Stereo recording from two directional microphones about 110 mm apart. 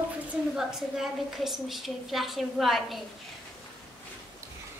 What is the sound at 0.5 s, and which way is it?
A woman's voice, 5° right (ahead or behind).